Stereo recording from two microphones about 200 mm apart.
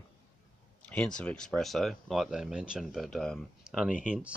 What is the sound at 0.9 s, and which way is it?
Speech, 5° left (ahead or behind).